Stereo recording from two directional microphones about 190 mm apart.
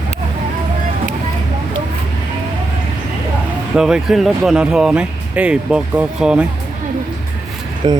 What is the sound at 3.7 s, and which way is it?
Speech, 5° right (ahead or behind).